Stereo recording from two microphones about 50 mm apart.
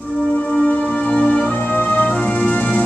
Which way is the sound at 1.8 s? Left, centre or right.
Left.